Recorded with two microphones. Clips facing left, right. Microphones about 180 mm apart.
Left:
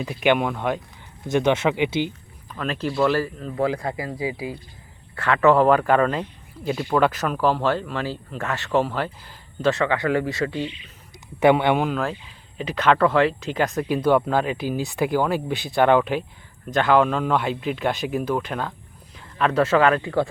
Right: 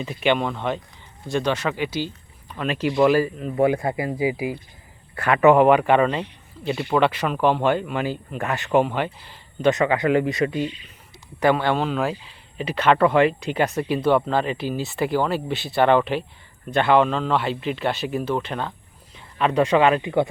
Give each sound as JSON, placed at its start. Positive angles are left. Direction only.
{"t": 0.2, "sound": "speech", "side_deg": 10}
{"t": 1.3, "sound": "speech", "side_deg": 20}
{"t": 2.6, "sound": "speech", "side_deg": -5}
{"t": 3.5, "sound": "speech", "side_deg": -25}
{"t": 11.3, "sound": "speech", "side_deg": 20}
{"t": 12.5, "sound": "speech", "side_deg": -10}
{"t": 14.3, "sound": "speech", "side_deg": 5}
{"t": 16.6, "sound": "speech", "side_deg": -5}
{"t": 19.1, "sound": "a sound", "side_deg": 0}
{"t": 19.5, "sound": "speech", "side_deg": -15}